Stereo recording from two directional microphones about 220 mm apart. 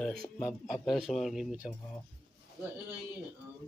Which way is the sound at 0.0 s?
5° left (ahead or behind).